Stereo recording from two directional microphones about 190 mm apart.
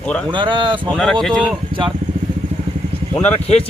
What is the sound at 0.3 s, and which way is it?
Speech, 25° right (ahead or behind).